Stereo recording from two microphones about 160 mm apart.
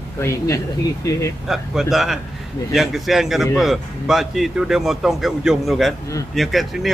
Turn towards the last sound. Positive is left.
turn(degrees=0)  # may be behind; listen again after turning